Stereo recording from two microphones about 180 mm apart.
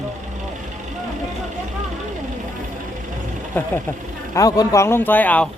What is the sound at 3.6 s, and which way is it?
Speech, 10° left (ahead or behind).